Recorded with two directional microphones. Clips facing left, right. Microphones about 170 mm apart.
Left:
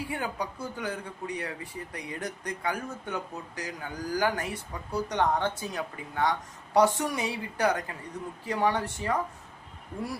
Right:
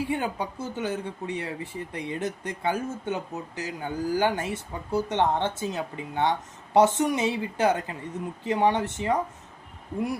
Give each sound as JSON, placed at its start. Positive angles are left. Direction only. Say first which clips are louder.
{"t": 0.1, "sound": "speech", "louder": "right 4 dB", "side_deg": -25}